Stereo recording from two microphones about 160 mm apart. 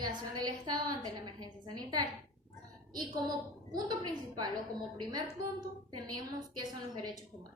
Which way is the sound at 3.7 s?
25° right (ahead or behind).